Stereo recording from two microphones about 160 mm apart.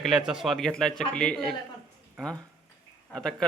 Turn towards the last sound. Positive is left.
turn(degrees=5)  # may be behind; listen again after turning